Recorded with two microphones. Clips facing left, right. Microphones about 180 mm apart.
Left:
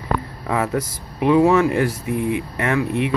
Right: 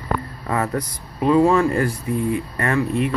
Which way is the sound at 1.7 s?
80° left.